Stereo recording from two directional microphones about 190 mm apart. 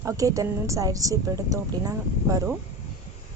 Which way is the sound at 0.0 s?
15° right (ahead or behind).